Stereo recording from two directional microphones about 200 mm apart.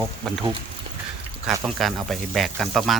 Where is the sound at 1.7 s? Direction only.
Centre (ahead or behind).